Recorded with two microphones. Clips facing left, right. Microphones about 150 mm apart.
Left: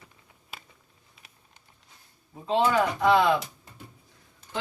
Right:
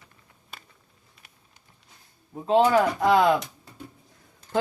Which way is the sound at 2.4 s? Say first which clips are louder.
Right 4 dB; 45° right (ahead or behind).